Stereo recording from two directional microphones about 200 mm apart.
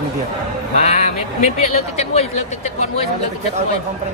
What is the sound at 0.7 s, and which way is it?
Speech, 35° left (ahead or behind).